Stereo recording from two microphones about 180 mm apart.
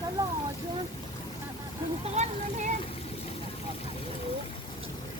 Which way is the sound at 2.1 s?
35° right (ahead or behind).